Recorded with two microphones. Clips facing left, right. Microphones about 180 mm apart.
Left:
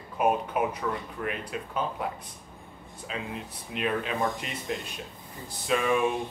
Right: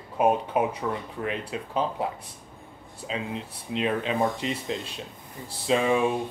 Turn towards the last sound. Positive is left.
turn(degrees=-25)  # may be behind; listen again after turning